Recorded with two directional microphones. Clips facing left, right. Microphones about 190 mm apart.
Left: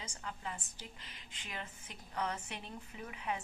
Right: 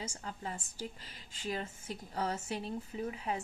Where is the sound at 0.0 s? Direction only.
30° right (ahead or behind).